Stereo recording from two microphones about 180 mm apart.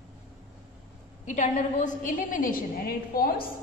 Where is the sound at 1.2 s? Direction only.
40° left (ahead or behind).